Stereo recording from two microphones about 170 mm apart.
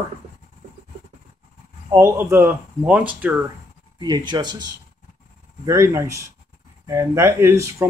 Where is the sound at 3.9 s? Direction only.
25° right (ahead or behind).